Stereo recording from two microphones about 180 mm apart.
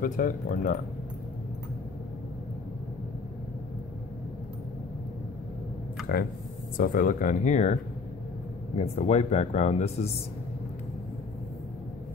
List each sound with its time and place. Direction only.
0.0 s speech: 55° left (ahead or behind)
6.8 s speech: 50° left (ahead or behind)